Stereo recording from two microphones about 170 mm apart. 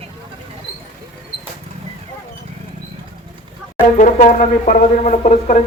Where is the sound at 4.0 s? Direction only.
45° left (ahead or behind).